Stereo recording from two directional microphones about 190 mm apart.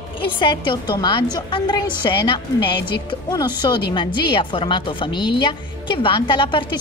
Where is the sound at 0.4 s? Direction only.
25° left (ahead or behind).